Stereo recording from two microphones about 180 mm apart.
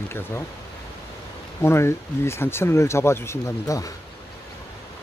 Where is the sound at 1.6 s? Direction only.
15° left (ahead or behind).